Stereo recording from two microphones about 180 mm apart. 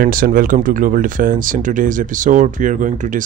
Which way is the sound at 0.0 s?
50° right (ahead or behind).